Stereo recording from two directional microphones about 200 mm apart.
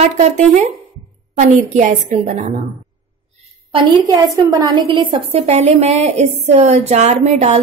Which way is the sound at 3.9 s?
15° right (ahead or behind).